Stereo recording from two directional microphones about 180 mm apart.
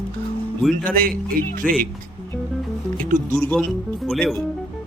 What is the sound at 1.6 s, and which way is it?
Speech, 5° left (ahead or behind).